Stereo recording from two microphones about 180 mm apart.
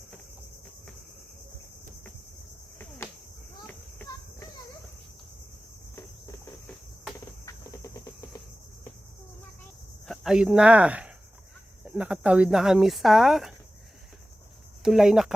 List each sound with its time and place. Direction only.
6.0 s cricket: 20° left (ahead or behind)
10.1 s speech: centre (ahead or behind)
14.8 s speech: centre (ahead or behind)